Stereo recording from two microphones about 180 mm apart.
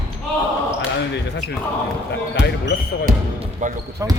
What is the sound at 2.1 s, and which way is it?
Speech, 70° left (ahead or behind).